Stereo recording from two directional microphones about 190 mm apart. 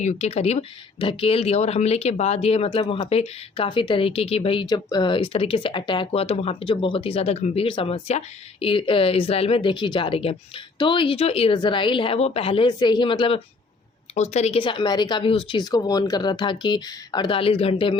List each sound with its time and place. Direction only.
0.0 s speech: 35° left (ahead or behind)